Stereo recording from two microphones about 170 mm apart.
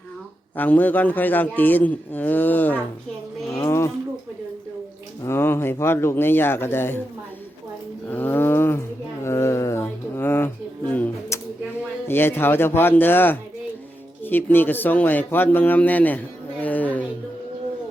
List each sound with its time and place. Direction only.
0.5 s a man's voice: 10° left (ahead or behind)
5.2 s a man's voice: 15° left (ahead or behind)
8.0 s a man's voice: 10° left (ahead or behind)
9.2 s a sound: 15° left (ahead or behind)
12.0 s a man's voice: 10° left (ahead or behind)